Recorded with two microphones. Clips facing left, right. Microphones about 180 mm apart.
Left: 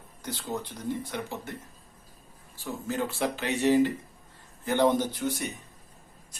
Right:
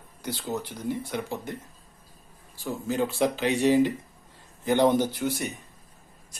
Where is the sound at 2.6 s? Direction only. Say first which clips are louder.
Right 4 dB; 15° right (ahead or behind).